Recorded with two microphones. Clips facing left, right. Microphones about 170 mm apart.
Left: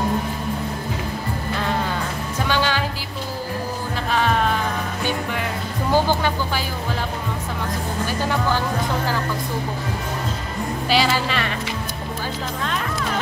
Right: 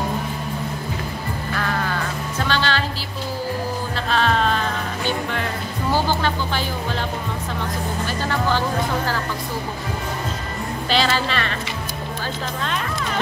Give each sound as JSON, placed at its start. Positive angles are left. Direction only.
{"t": 1.5, "sound": "music", "side_deg": 20}
{"t": 4.1, "sound": "music", "side_deg": 10}
{"t": 6.0, "sound": "music", "side_deg": 10}
{"t": 8.2, "sound": "music", "side_deg": 10}
{"t": 10.9, "sound": "speech", "side_deg": 10}